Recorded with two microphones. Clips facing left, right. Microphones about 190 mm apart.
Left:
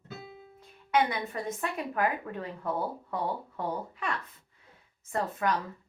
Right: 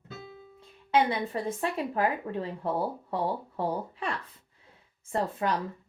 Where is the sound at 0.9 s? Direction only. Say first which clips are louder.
Right 2 dB; 30° right (ahead or behind).